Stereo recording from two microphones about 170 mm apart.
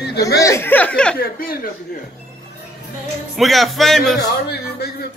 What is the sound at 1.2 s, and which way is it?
Speech, 55° left (ahead or behind).